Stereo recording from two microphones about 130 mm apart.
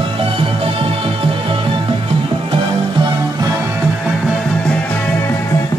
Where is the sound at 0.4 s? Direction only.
45° right (ahead or behind).